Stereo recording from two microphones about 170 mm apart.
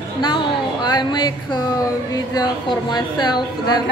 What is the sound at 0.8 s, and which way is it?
A woman's voice, 25° left (ahead or behind).